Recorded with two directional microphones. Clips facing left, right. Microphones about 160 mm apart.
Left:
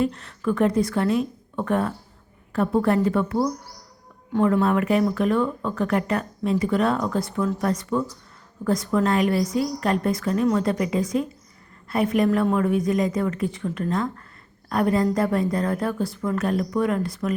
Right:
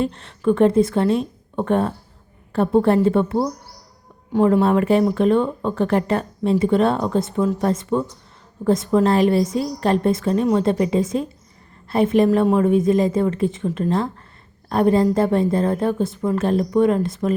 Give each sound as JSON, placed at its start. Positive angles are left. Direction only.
{"t": 0.0, "sound": "speech", "side_deg": -25}